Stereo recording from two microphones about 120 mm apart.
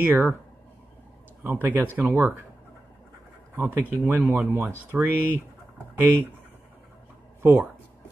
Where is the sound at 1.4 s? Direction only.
20° right (ahead or behind).